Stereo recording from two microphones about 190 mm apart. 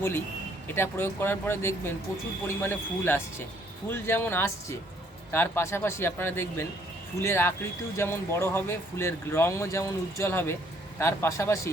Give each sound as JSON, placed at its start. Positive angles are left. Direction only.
{"t": 0.7, "sound": "speech", "side_deg": 10}